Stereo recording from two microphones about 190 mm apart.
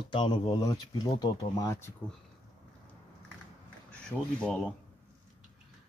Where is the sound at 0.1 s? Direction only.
25° left (ahead or behind).